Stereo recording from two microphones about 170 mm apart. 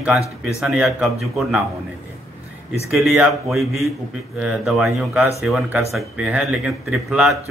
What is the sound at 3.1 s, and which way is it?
Speech, 5° right (ahead or behind).